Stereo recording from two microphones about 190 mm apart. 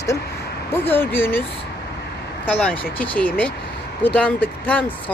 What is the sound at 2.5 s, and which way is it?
Speech, 10° left (ahead or behind).